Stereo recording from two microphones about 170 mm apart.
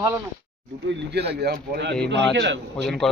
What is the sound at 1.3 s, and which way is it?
Speech, 75° right (ahead or behind).